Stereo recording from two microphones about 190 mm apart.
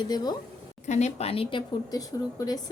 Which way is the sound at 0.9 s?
35° left (ahead or behind).